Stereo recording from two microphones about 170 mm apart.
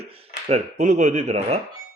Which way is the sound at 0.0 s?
40° right (ahead or behind).